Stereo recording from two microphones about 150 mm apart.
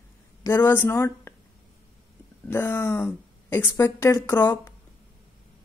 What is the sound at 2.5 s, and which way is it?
Speech, 15° left (ahead or behind).